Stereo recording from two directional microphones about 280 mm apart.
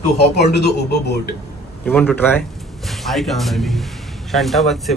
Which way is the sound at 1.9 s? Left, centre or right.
Centre.